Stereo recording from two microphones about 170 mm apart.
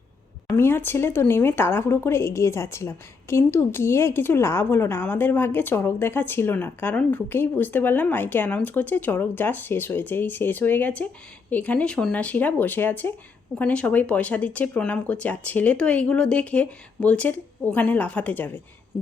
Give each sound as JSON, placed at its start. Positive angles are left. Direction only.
{"t": 0.5, "sound": "speech", "side_deg": 15}